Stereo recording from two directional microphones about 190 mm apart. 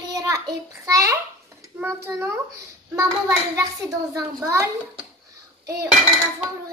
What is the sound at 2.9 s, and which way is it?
A child's voice, 15° right (ahead or behind).